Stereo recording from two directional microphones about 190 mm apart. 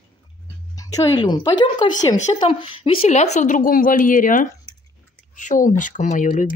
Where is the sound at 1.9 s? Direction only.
40° left (ahead or behind).